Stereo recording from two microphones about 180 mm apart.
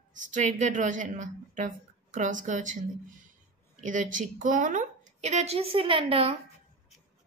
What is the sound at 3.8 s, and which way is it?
A woman's voice, 45° right (ahead or behind).